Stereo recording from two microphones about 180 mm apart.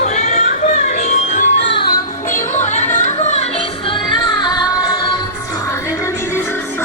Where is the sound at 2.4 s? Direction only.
40° left (ahead or behind).